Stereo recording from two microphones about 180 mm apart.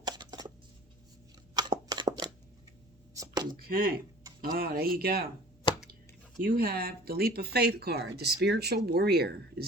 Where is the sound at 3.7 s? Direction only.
55° right (ahead or behind).